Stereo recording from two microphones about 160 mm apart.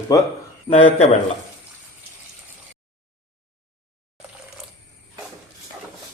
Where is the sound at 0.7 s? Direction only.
40° left (ahead or behind).